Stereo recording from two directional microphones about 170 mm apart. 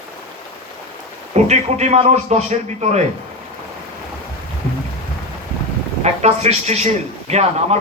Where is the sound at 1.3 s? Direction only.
40° right (ahead or behind).